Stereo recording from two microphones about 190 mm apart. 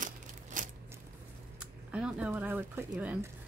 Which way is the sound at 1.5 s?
5° right (ahead or behind).